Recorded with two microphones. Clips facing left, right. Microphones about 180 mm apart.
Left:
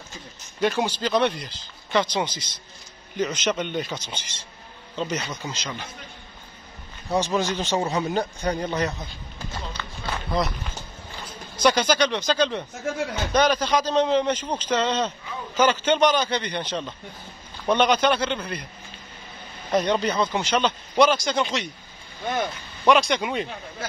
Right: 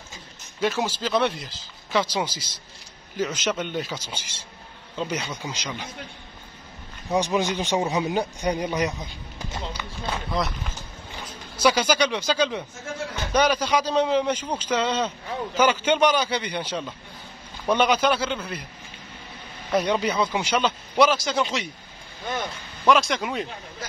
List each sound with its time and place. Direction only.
0.6 s a man's voice: centre (ahead or behind)
7.1 s a man's voice: 15° right (ahead or behind)
11.5 s a man's voice: 10° right (ahead or behind)
19.7 s a man's voice: 10° right (ahead or behind)
22.8 s speech: centre (ahead or behind)